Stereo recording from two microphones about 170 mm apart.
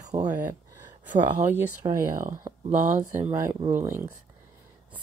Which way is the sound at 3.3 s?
20° right (ahead or behind).